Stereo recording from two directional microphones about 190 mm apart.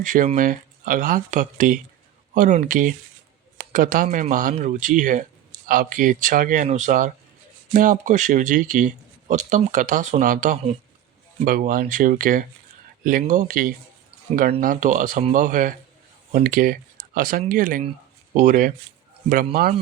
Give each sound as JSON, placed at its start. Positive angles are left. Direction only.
{"t": 0.0, "sound": "speech", "side_deg": -45}